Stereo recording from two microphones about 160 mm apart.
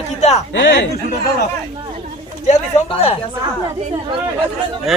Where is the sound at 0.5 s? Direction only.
90° left.